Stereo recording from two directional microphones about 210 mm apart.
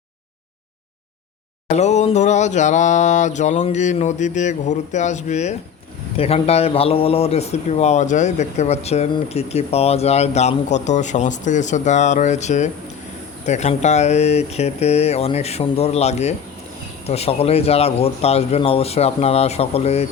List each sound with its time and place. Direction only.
1.7 s speech: 30° left (ahead or behind)